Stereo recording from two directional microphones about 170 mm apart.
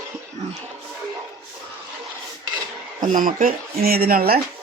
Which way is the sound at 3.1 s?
50° right (ahead or behind).